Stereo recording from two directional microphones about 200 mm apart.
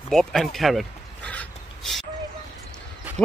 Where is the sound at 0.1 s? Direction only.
Centre (ahead or behind).